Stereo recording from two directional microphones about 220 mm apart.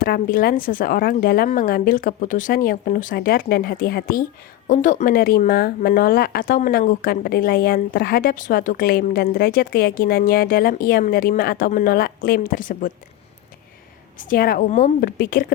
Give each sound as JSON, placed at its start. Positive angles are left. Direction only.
{"t": 0.0, "sound": "speech", "side_deg": 40}
{"t": 14.2, "sound": "speech", "side_deg": 40}